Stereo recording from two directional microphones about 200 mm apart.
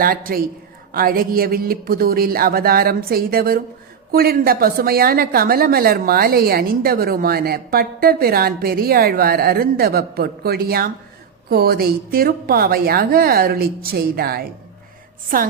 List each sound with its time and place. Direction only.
0.0 s a woman's voice: 45° right (ahead or behind)